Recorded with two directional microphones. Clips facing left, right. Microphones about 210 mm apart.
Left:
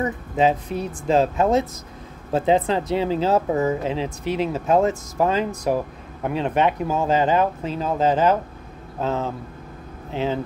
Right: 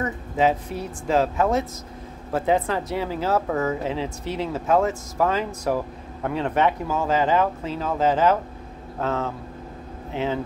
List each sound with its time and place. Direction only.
0.0 s speech: 15° left (ahead or behind)